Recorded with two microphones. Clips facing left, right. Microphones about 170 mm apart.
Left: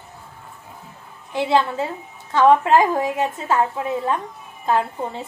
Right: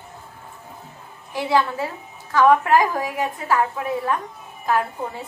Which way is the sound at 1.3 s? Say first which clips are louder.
Left 2 dB; 20° left (ahead or behind).